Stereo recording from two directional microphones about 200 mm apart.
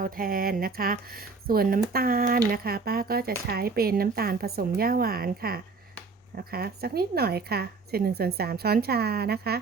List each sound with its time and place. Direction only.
0.0 s a woman's voice: 45° right (ahead or behind)